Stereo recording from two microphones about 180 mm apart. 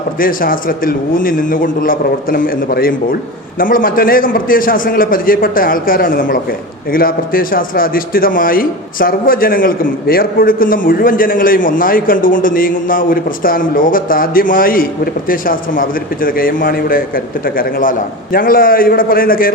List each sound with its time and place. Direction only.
0.2 s speech: 50° left (ahead or behind)